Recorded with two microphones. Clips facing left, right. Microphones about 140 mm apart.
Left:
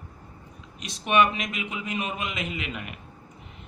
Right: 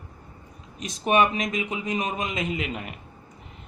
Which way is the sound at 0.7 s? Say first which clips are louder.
Right 1 dB; 45° right (ahead or behind).